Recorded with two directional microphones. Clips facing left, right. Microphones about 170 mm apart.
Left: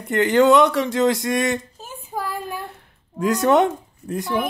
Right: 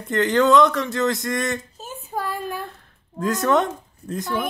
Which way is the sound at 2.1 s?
15° left (ahead or behind).